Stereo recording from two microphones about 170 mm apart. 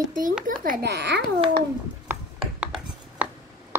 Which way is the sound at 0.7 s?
75° right (ahead or behind).